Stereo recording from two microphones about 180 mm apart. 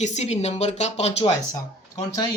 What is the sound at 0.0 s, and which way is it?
Speech, 40° left (ahead or behind).